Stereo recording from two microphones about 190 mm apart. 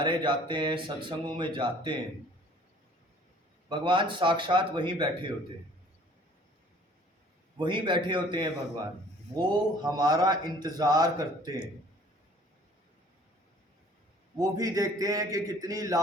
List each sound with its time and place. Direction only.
0.0 s a man's voice: 25° right (ahead or behind)
3.7 s a man's voice: 25° right (ahead or behind)
7.6 s a man's voice: 25° right (ahead or behind)
14.3 s a man's voice: 20° right (ahead or behind)